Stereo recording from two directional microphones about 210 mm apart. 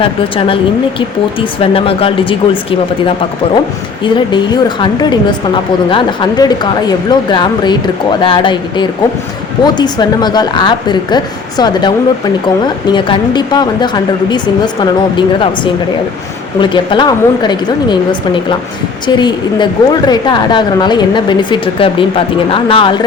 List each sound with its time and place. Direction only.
0.0 s a woman's voice: 25° left (ahead or behind)